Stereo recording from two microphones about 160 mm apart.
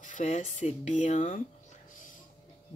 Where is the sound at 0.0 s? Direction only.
50° left (ahead or behind).